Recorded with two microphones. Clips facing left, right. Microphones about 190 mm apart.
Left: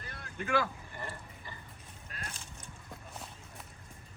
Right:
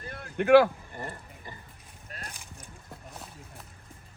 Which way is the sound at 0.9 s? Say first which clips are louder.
Right 4 dB; 45° right (ahead or behind).